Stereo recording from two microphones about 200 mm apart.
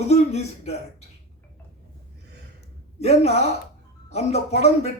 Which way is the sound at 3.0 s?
30° left (ahead or behind).